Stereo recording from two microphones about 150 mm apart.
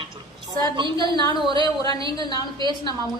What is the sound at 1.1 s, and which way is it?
A woman's voice, 25° left (ahead or behind).